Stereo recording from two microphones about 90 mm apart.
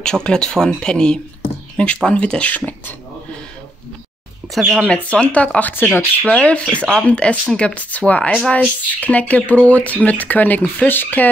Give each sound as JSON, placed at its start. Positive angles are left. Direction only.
{"t": 0.0, "sound": "speech", "side_deg": 10}
{"t": 4.8, "sound": "speech", "side_deg": 10}